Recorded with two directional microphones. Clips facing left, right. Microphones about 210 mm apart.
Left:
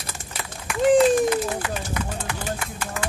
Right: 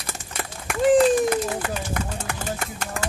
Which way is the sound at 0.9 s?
50° right (ahead or behind).